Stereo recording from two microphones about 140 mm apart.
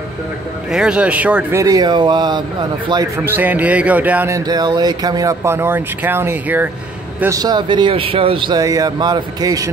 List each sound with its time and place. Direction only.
0.7 s speech: 5° right (ahead or behind)
1.6 s speech: 25° right (ahead or behind)
3.3 s speech: 15° right (ahead or behind)
4.4 s speech: 30° right (ahead or behind); by 6.7 s 15° right (ahead or behind)
7.2 s speech: 25° right (ahead or behind)